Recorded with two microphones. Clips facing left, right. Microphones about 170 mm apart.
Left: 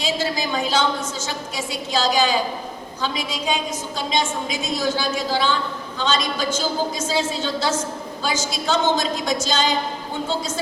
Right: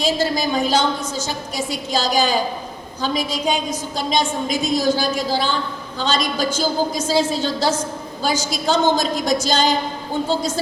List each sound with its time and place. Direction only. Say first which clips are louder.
0.2 s a woman's voice: right 4 dB; 40° right (ahead or behind)